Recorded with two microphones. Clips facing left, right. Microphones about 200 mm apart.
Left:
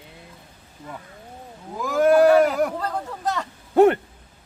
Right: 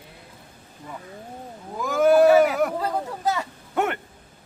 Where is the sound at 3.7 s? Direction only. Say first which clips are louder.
Left 10 dB; 30° left (ahead or behind).